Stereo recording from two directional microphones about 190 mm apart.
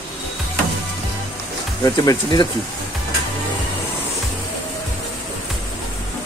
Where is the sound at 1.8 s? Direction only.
20° left (ahead or behind).